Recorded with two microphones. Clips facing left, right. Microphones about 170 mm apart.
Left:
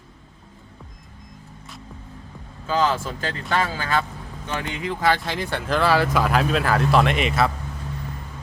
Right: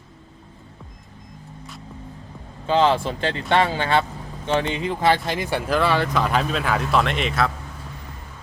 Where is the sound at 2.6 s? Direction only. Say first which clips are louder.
Right 4 dB; 30° right (ahead or behind); by 7.5 s 5° left (ahead or behind).